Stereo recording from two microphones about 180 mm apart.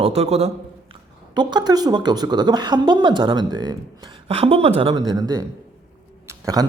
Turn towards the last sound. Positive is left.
turn(degrees=-20)  # may be behind; listen again after turning